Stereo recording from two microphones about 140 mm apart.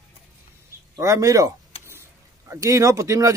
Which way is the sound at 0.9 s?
25° right (ahead or behind).